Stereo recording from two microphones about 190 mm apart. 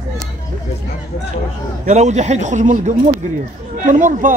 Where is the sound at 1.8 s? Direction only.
40° right (ahead or behind).